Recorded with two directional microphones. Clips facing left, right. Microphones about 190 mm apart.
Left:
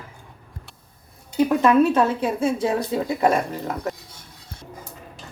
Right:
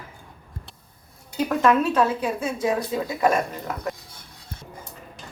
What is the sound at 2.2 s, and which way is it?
A woman's voice, 30° left (ahead or behind).